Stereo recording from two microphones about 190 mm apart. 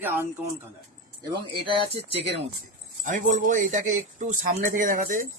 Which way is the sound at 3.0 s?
40° right (ahead or behind).